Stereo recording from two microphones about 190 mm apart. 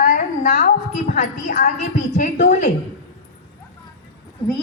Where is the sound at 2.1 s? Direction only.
45° left (ahead or behind).